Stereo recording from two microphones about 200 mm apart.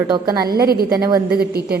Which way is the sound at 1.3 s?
50° right (ahead or behind).